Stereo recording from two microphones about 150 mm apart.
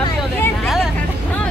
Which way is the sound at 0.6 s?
Centre (ahead or behind).